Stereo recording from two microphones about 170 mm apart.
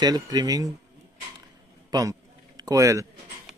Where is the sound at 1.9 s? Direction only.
20° right (ahead or behind).